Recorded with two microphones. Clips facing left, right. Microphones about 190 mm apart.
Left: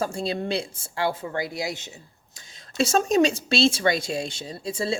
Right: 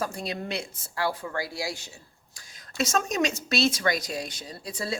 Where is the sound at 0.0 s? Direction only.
30° left (ahead or behind).